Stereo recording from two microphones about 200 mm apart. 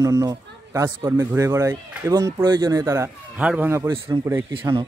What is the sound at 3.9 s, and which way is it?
Speech, 20° right (ahead or behind).